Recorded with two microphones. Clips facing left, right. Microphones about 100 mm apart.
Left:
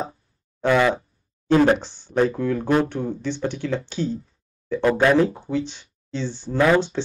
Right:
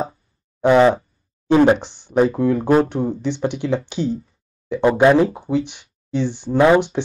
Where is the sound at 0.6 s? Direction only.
25° right (ahead or behind).